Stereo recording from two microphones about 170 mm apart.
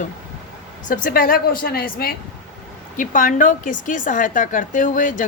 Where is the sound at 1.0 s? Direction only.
60° left (ahead or behind).